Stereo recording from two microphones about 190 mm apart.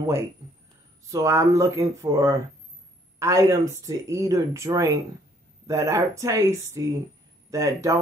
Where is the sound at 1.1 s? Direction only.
15° right (ahead or behind).